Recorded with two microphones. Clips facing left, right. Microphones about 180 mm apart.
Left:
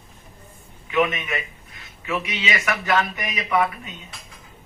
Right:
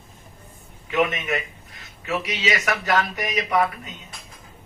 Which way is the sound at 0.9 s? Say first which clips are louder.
Even; 40° right (ahead or behind).